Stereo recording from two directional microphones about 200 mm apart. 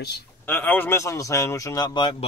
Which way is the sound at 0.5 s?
10° left (ahead or behind).